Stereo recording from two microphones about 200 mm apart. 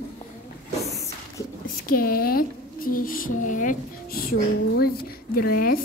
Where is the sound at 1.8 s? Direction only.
45° left (ahead or behind).